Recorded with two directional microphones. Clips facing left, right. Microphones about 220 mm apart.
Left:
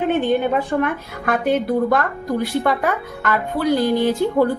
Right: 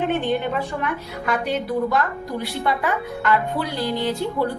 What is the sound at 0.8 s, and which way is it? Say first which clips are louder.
A woman's voice: left 5 dB; 55° left (ahead or behind).